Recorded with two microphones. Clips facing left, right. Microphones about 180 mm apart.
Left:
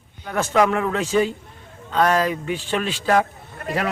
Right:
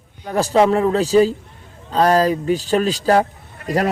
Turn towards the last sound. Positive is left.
turn(degrees=-40)  # may be behind; listen again after turning